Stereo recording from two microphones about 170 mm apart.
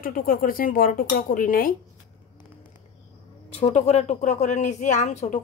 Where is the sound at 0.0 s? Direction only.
55° left (ahead or behind).